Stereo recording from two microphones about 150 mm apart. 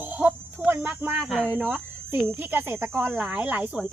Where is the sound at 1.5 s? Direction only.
10° right (ahead or behind).